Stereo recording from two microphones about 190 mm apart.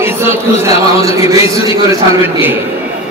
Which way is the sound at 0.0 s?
10° right (ahead or behind).